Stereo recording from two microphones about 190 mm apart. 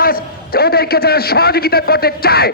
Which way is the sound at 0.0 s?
50° left (ahead or behind).